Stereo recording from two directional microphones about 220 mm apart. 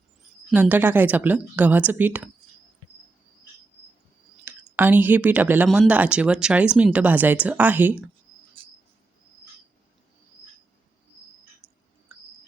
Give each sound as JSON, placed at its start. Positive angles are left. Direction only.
{"t": 0.5, "sound": "speech", "side_deg": -5}
{"t": 4.4, "sound": "speech", "side_deg": -10}
{"t": 8.6, "sound": "cricket", "side_deg": -25}
{"t": 11.6, "sound": "a sound", "side_deg": -10}